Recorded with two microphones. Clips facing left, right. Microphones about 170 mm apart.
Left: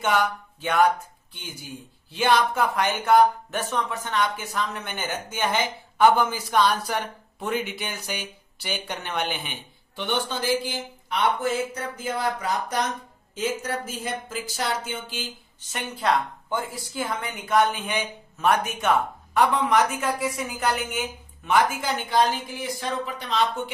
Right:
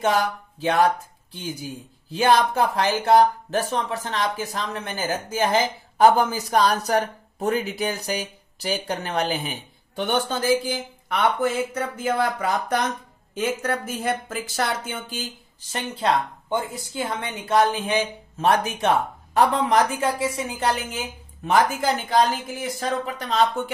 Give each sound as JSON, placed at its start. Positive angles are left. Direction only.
{"t": 0.0, "sound": "speech", "side_deg": -35}
{"t": 2.1, "sound": "speech", "side_deg": -40}
{"t": 15.7, "sound": "a woman's voice", "side_deg": -25}